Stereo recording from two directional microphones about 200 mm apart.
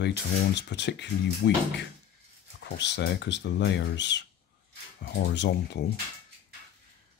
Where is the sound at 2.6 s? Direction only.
60° left (ahead or behind).